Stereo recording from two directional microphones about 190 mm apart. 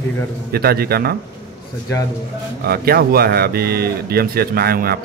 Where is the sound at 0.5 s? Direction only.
55° right (ahead or behind).